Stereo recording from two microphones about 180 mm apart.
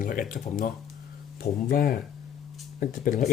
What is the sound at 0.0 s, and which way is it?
Speech, 50° left (ahead or behind).